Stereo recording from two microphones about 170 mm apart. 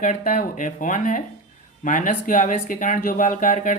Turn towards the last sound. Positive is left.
turn(degrees=50)  # may be behind; listen again after turning